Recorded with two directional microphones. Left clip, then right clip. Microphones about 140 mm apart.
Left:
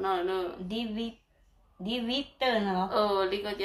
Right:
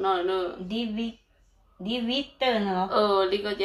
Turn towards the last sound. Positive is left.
turn(degrees=-5)  # may be behind; listen again after turning